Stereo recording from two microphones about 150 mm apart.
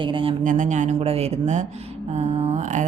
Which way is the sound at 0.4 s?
55° right (ahead or behind).